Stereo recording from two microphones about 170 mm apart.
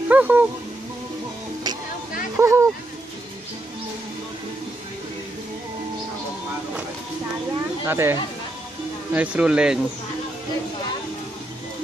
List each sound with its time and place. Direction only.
0.1 s speech: 10° right (ahead or behind)
2.3 s speech: 15° right (ahead or behind)
7.8 s speech: 15° right (ahead or behind)